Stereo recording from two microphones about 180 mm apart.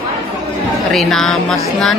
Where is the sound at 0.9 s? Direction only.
Centre (ahead or behind).